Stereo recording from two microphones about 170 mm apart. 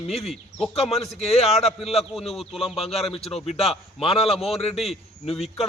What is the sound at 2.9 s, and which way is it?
Speech, 35° left (ahead or behind).